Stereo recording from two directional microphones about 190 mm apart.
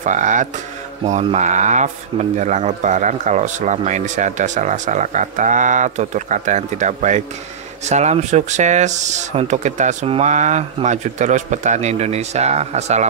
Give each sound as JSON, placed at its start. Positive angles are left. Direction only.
{"t": 0.0, "sound": "speech", "side_deg": -40}